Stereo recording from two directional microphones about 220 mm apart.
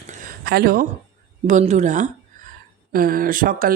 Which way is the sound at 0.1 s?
40° right (ahead or behind).